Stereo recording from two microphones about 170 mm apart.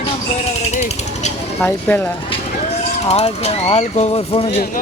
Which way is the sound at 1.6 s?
10° left (ahead or behind).